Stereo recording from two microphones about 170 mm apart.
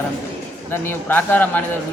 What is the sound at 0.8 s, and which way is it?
Speech, 10° left (ahead or behind).